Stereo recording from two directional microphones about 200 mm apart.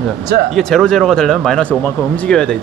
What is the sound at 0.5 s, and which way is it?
Speech, 5° left (ahead or behind).